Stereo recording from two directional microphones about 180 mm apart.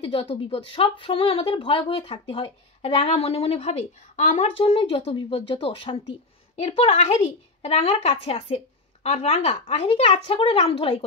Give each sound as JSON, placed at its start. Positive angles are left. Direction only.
{"t": 0.0, "sound": "speech", "side_deg": 30}